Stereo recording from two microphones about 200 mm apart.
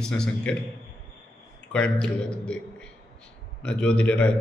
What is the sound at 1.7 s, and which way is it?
A man's voice, 5° left (ahead or behind).